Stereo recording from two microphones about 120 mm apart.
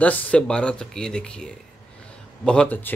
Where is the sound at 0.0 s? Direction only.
10° left (ahead or behind).